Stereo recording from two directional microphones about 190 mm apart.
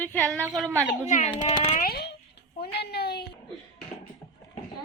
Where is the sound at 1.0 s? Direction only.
35° left (ahead or behind).